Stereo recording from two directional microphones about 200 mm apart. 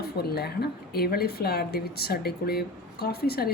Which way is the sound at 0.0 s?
50° left (ahead or behind).